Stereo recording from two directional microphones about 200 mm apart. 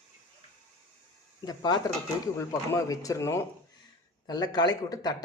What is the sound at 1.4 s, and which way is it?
Speech, 20° left (ahead or behind).